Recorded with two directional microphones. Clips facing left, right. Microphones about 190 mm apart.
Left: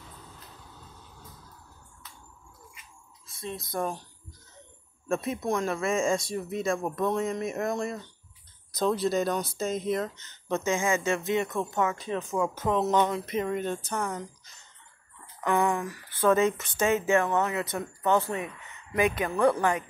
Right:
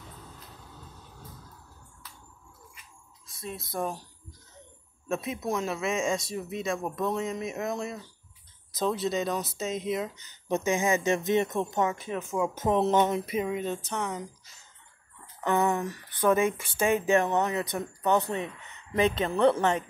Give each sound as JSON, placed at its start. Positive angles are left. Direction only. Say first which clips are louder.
{"t": 3.3, "sound": "speech", "louder": "left 1 dB", "side_deg": -5}
{"t": 12.5, "sound": "speech", "louder": "right 2 dB", "side_deg": -20}
{"t": 13.2, "sound": "speech", "louder": "even", "side_deg": -10}
{"t": 15.4, "sound": "speech", "louder": "even", "side_deg": -20}